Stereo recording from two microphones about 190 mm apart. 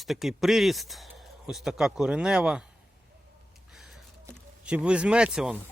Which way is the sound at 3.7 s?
Centre (ahead or behind).